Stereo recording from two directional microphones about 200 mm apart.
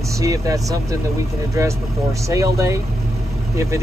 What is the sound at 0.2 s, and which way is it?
Speech, 15° right (ahead or behind).